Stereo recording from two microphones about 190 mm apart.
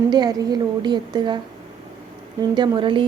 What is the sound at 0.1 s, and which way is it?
A woman's voice, 20° right (ahead or behind).